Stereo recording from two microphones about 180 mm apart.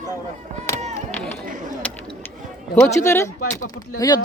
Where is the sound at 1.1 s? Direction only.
5° left (ahead or behind).